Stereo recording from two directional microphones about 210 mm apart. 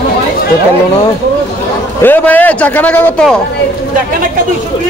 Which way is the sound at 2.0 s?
10° left (ahead or behind).